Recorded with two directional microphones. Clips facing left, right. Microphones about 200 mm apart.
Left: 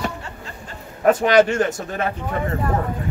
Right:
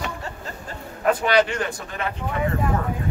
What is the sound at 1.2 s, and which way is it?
Speech, 45° left (ahead or behind).